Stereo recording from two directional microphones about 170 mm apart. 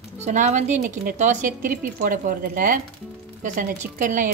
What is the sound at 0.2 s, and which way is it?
A woman's voice, 45° right (ahead or behind).